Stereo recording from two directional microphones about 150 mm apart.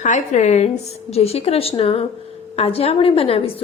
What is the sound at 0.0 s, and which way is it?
A woman's voice, 55° left (ahead or behind).